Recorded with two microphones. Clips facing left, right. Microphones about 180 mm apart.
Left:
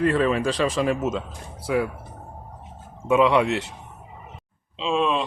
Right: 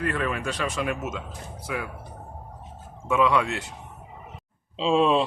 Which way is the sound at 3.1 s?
20° left (ahead or behind).